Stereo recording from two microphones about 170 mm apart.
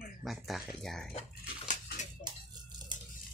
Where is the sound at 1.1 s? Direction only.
40° left (ahead or behind).